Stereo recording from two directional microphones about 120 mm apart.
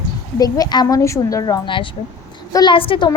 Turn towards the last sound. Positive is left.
turn(degrees=45)  # may be behind; listen again after turning